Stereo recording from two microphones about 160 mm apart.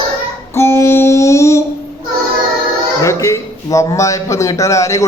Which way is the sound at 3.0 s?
20° left (ahead or behind).